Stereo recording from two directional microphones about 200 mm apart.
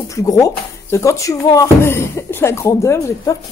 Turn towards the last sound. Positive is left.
turn(degrees=15)  # may be behind; listen again after turning